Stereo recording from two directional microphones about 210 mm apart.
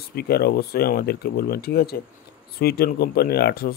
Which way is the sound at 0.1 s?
50° left (ahead or behind).